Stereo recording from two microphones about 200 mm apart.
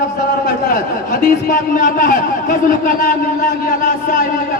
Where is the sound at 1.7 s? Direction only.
40° left (ahead or behind).